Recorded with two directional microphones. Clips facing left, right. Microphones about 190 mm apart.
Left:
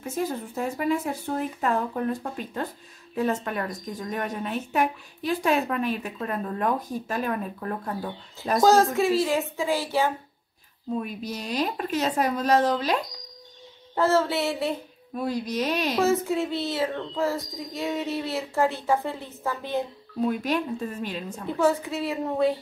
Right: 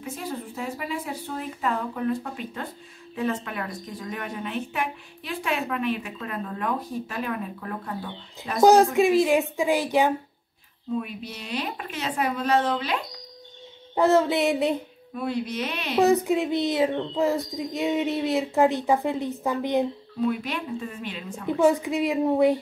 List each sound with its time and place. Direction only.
0.0 s a woman's voice: 45° left (ahead or behind)
8.5 s a woman's voice: 15° right (ahead or behind)
11.0 s a woman's voice: 40° left (ahead or behind)
13.9 s a woman's voice: 15° right (ahead or behind)
15.1 s a woman's voice: 40° left (ahead or behind)
16.0 s a woman's voice: 15° right (ahead or behind)
20.2 s a woman's voice: 40° left (ahead or behind)
21.5 s a woman's voice: 15° right (ahead or behind)